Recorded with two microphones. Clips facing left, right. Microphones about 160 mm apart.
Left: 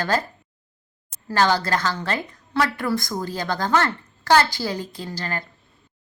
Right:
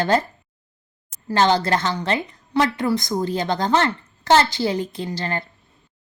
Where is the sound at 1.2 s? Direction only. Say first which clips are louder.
Right 2 dB; 20° right (ahead or behind).